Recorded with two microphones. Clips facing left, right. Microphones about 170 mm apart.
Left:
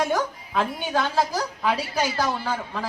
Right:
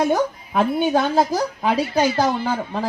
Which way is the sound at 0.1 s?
25° right (ahead or behind).